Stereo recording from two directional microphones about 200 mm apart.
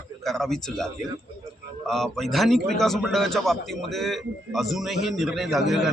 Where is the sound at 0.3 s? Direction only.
Centre (ahead or behind).